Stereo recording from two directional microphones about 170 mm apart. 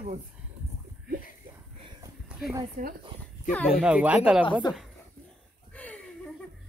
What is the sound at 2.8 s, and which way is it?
Speech, 50° right (ahead or behind).